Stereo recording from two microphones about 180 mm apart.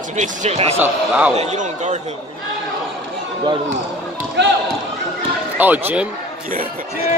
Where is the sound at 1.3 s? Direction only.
40° right (ahead or behind).